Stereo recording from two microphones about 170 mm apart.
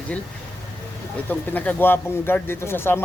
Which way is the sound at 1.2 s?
10° left (ahead or behind).